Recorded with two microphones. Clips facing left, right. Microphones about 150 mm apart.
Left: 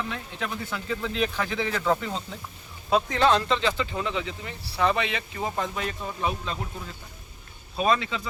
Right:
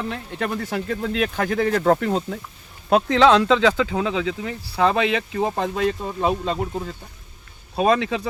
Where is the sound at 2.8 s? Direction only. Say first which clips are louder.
Right 6 dB; 75° right (ahead or behind).